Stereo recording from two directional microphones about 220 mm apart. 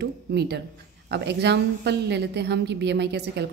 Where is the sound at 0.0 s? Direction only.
50° right (ahead or behind).